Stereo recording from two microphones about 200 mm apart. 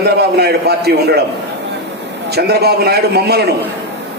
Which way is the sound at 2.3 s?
55° right (ahead or behind).